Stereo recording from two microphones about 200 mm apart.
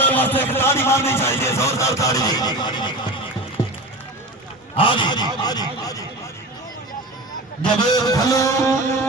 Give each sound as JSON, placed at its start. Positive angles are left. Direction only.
{"t": 0.0, "sound": "a man's voice", "side_deg": 10}
{"t": 4.8, "sound": "speech", "side_deg": 25}
{"t": 7.6, "sound": "a man's voice", "side_deg": 20}